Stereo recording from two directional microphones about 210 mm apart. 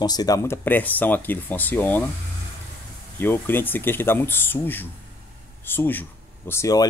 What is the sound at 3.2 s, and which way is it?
Speech, 10° left (ahead or behind).